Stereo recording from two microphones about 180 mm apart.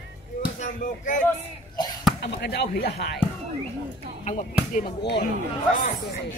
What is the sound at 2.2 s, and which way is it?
Speech, 70° left (ahead or behind).